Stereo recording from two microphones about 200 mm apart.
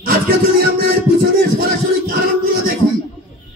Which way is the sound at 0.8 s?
50° right (ahead or behind).